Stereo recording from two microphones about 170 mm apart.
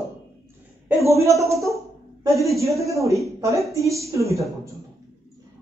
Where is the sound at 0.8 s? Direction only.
15° right (ahead or behind).